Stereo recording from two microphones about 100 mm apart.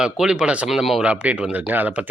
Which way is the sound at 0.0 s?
5° right (ahead or behind).